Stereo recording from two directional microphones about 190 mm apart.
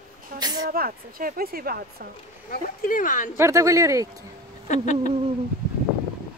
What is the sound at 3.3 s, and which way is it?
Speech, 15° right (ahead or behind).